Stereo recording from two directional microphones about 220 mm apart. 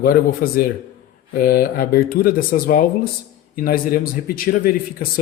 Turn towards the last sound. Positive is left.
turn(degrees=40)  # may be behind; listen again after turning